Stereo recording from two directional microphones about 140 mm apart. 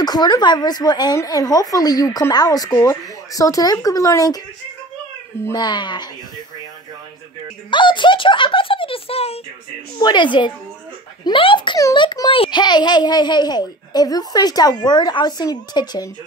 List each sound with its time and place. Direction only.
0.0 s a woman's voice: 30° left (ahead or behind)
5.4 s a child's voice: 25° left (ahead or behind)
7.7 s a child's voice: 35° left (ahead or behind)
9.9 s a child's voice: 30° left (ahead or behind)